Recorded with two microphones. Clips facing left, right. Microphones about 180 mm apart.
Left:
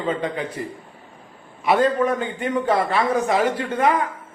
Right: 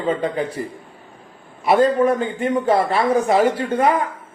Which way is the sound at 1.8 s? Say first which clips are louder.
Right 3 dB; 30° right (ahead or behind).